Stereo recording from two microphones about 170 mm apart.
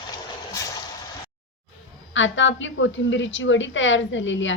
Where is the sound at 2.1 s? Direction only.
90° left.